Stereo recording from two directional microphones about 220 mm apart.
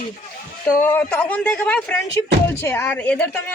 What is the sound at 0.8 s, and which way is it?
Speech, 5° left (ahead or behind).